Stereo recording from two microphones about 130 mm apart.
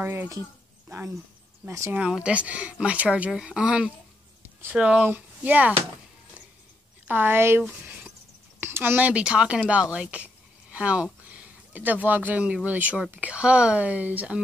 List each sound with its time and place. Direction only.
0.0 s speech: 15° right (ahead or behind)
2.0 s speech: 5° right (ahead or behind)
7.1 s speech: 15° right (ahead or behind)